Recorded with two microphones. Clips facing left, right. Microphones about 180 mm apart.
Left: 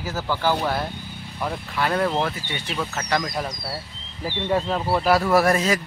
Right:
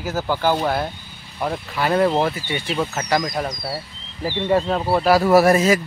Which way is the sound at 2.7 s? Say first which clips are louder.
Right 4 dB; 20° right (ahead or behind).